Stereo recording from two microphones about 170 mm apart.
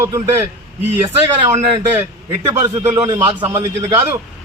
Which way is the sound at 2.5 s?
20° right (ahead or behind).